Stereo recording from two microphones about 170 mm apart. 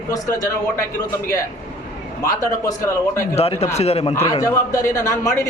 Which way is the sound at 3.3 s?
35° left (ahead or behind).